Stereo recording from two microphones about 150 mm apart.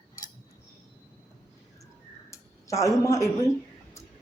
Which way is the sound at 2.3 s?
20° left (ahead or behind).